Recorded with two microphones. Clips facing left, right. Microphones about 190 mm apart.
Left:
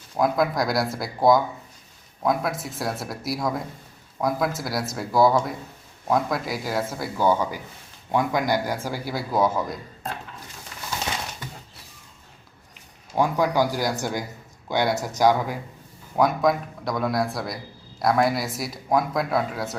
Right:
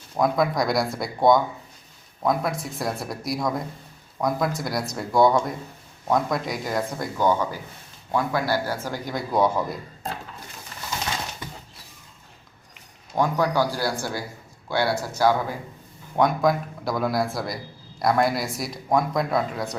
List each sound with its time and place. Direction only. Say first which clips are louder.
0.2 s speech: even; centre (ahead or behind)
13.1 s speech: left 1 dB; 10° left (ahead or behind)
16.1 s speech: even; centre (ahead or behind)